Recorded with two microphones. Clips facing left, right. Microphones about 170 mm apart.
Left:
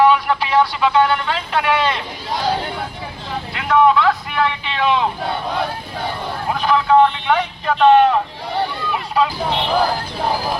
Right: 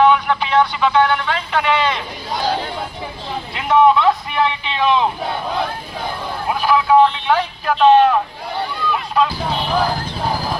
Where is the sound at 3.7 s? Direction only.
20° right (ahead or behind).